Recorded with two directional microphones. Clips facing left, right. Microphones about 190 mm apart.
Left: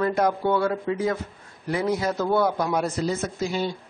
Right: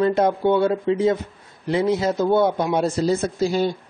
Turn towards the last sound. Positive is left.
turn(degrees=-35)  # may be behind; listen again after turning